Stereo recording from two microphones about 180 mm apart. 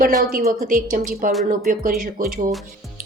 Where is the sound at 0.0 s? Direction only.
50° right (ahead or behind).